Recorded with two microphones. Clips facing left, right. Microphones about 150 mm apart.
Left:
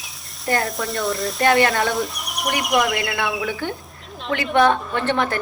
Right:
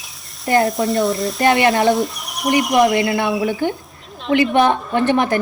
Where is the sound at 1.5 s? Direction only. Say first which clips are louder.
Right 3 dB; 20° right (ahead or behind).